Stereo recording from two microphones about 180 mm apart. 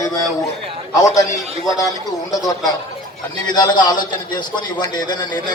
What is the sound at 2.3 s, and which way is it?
A man's voice, 20° left (ahead or behind).